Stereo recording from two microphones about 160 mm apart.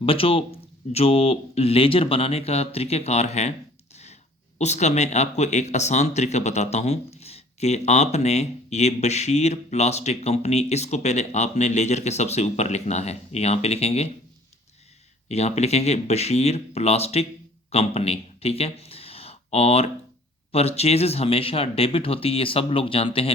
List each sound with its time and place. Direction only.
0.0 s speech: 35° left (ahead or behind)
4.5 s speech: 45° left (ahead or behind)
15.3 s speech: 45° left (ahead or behind)